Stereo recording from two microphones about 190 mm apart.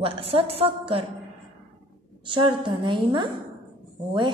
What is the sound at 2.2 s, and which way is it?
A woman's voice, 25° right (ahead or behind).